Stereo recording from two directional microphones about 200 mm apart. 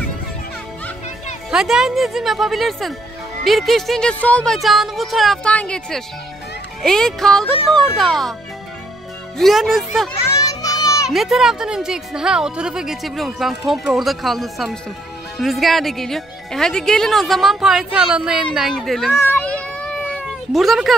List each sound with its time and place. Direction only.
1.5 s speech: centre (ahead or behind)
9.4 s speech: centre (ahead or behind)
10.3 s children playing: 15° left (ahead or behind)
11.1 s speech: centre (ahead or behind)
19.1 s a sound: 10° left (ahead or behind)
20.1 s cat: centre (ahead or behind)